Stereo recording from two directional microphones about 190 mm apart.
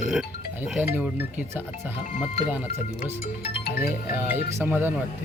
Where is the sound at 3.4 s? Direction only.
55° left (ahead or behind).